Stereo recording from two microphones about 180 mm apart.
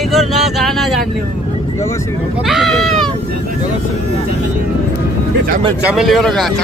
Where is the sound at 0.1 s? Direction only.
Centre (ahead or behind).